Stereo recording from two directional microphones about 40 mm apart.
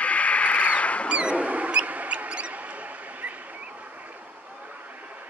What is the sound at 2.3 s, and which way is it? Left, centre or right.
Mouse, right.